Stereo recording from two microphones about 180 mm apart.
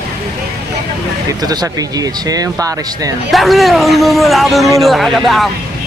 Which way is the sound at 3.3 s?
Centre (ahead or behind).